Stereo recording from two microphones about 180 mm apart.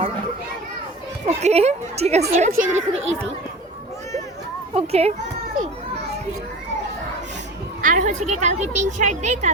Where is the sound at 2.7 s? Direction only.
90° right.